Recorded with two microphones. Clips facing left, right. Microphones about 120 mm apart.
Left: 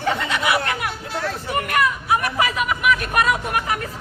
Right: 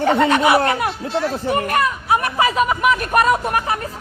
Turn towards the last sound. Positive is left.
turn(degrees=-35)  # may be behind; listen again after turning